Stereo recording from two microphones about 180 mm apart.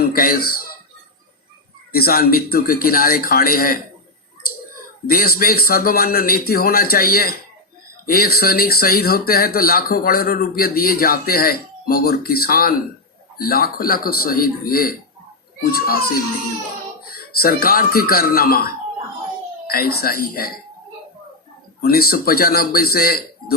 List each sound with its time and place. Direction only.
0.0 s speech: 55° left (ahead or behind)
1.9 s speech: 55° left (ahead or behind)
5.0 s speech: 55° left (ahead or behind)
21.8 s speech: 55° left (ahead or behind)